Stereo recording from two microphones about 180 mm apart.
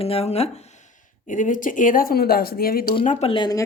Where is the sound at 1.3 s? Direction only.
45° left (ahead or behind).